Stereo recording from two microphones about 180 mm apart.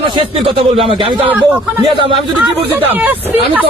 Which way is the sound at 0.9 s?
30° right (ahead or behind).